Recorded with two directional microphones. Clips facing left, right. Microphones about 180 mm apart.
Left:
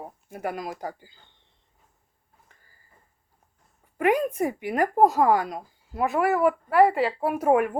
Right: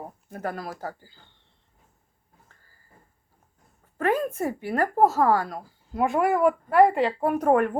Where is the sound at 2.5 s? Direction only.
15° left (ahead or behind).